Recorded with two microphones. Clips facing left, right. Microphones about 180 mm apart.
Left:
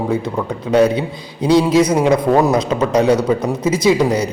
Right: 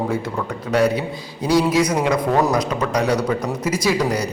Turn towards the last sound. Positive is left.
turn(degrees=25)  # may be behind; listen again after turning